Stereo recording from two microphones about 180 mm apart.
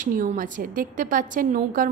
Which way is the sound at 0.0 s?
45° right (ahead or behind).